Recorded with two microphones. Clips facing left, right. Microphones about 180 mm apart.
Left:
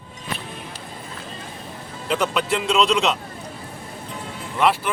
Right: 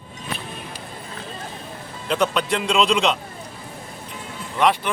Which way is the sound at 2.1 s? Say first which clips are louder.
Right 1 dB; 5° left (ahead or behind).